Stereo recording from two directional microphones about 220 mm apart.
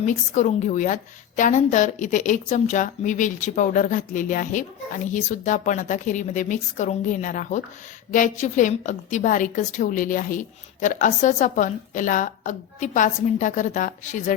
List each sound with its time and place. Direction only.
0.0 s a woman's voice: 35° left (ahead or behind)